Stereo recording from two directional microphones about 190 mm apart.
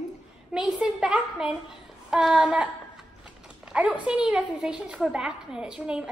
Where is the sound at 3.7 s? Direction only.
5° right (ahead or behind).